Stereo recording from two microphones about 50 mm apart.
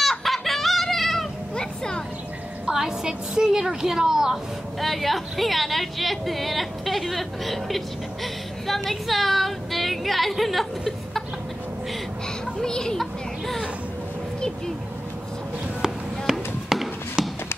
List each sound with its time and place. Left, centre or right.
0.0 s chicken: centre
1.5 s a sound: centre
2.7 s a woman's voice: centre
4.7 s a woman's voice: centre
12.6 s speech: centre
15.8 s chop: centre